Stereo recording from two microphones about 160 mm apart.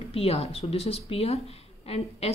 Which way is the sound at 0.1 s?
40° left (ahead or behind).